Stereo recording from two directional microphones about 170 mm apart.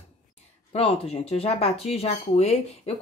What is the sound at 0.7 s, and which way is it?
Speech, 35° left (ahead or behind).